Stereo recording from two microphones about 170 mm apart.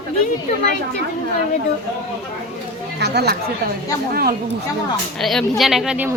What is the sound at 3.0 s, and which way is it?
Speech, 70° right (ahead or behind).